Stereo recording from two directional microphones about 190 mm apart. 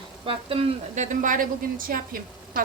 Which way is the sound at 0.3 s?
30° right (ahead or behind).